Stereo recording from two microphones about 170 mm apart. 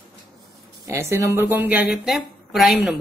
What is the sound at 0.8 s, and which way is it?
Speech, 15° right (ahead or behind).